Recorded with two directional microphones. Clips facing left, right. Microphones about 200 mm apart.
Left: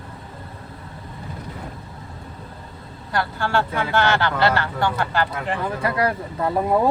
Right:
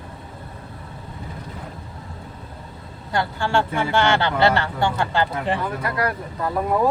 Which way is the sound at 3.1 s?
25° right (ahead or behind).